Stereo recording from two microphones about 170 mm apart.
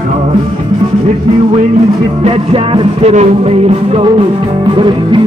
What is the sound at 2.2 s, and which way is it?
Music, 35° right (ahead or behind).